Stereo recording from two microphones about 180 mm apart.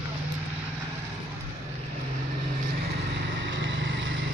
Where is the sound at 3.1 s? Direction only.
80° right.